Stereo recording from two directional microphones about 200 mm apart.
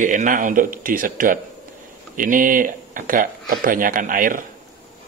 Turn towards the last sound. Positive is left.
turn(degrees=-45)  # may be behind; listen again after turning